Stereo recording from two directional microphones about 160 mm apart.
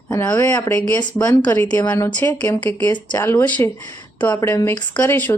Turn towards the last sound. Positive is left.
turn(degrees=15)  # may be behind; listen again after turning